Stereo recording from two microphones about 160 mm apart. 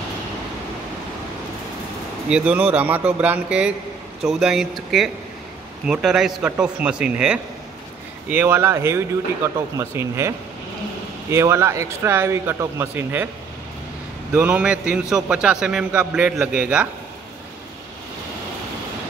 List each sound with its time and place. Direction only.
2.2 s a man's voice: 5° right (ahead or behind)
14.3 s a man's voice: 5° right (ahead or behind)